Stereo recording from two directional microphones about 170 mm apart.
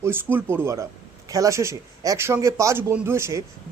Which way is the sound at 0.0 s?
10° right (ahead or behind).